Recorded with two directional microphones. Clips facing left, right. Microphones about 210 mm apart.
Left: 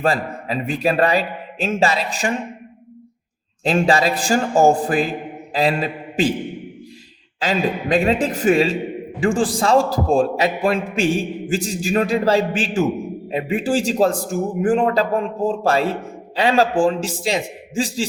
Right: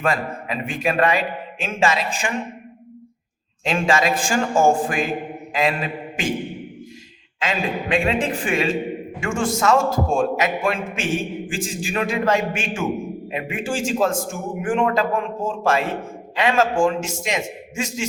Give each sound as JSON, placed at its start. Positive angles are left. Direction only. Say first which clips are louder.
{"t": 0.0, "sound": "a man's voice", "louder": "left 2 dB", "side_deg": 35}
{"t": 3.6, "sound": "a man's voice", "louder": "left 3 dB", "side_deg": 35}
{"t": 7.3, "sound": "a man's voice", "louder": "left 4 dB", "side_deg": 35}